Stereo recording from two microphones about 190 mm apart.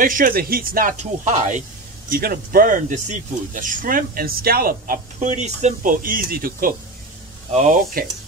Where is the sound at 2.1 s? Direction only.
50° right (ahead or behind).